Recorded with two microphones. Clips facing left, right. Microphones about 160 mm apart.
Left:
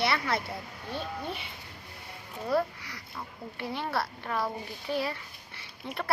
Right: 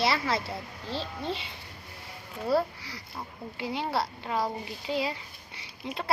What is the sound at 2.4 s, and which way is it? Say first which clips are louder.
A child's voice: right 2 dB; 30° right (ahead or behind).